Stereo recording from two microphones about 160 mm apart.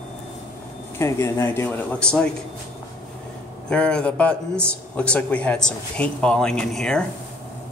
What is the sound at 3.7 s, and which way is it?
Speech, 5° left (ahead or behind).